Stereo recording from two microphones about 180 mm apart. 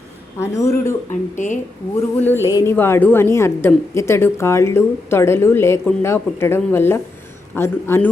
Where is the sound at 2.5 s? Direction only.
20° left (ahead or behind).